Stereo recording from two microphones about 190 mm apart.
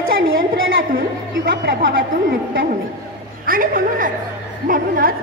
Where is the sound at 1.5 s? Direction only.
50° right (ahead or behind).